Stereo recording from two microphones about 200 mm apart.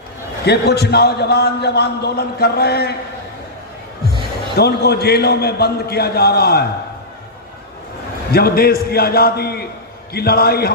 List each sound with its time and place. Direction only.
0.4 s a man's voice: 55° left (ahead or behind)
4.5 s a man's voice: 55° left (ahead or behind)
8.3 s a man's voice: 50° left (ahead or behind)